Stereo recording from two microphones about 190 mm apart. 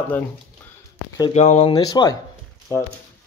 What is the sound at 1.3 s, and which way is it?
Speech, 35° left (ahead or behind).